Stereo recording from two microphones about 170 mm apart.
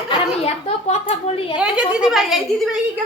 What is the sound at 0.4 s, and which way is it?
A woman's voice, 35° left (ahead or behind).